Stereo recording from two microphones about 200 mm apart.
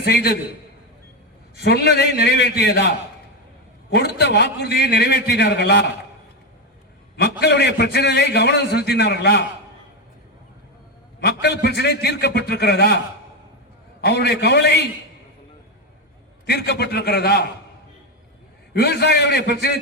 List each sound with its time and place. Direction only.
0.0 s a man's voice: 55° left (ahead or behind)
1.6 s a man's voice: 55° left (ahead or behind)
3.9 s a man's voice: 55° left (ahead or behind)
7.2 s a man's voice: 55° left (ahead or behind)
11.2 s a man's voice: 55° left (ahead or behind)
14.0 s a man's voice: 55° left (ahead or behind)
16.5 s a man's voice: 55° left (ahead or behind)
18.7 s a man's voice: 55° left (ahead or behind)